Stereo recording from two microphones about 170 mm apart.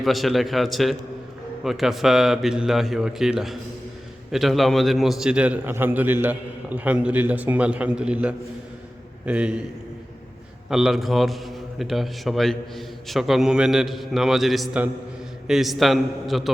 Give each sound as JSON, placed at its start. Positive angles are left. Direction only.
{"t": 0.0, "sound": "a man's voice", "side_deg": 0}
{"t": 10.7, "sound": "a man's voice", "side_deg": -5}